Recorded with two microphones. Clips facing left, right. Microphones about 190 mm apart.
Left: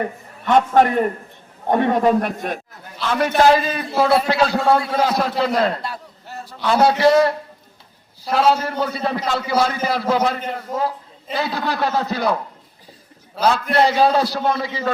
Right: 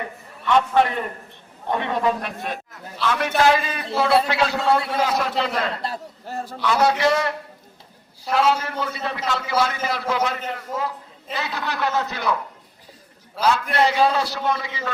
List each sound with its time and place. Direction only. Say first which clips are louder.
0.0 s a man's voice: left 5 dB; 45° left (ahead or behind)
6.2 s a man's voice: right 6 dB; 45° right (ahead or behind)
6.6 s a man's voice: left 4 dB; 35° left (ahead or behind)
13.4 s a man's voice: left 3 dB; 35° left (ahead or behind)